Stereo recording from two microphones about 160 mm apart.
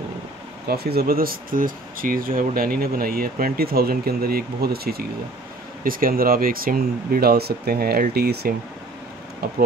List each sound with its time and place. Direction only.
0.7 s speech: 80° right